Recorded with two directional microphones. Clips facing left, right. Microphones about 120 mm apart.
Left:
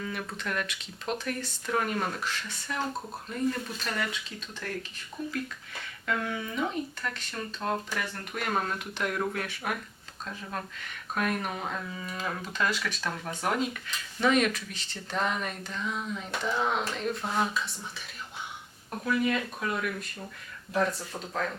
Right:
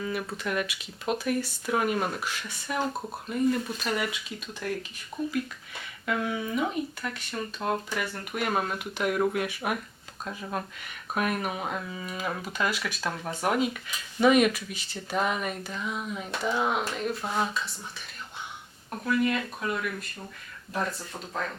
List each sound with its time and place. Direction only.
0.0 s speech: 10° right (ahead or behind)
19.0 s speech: centre (ahead or behind)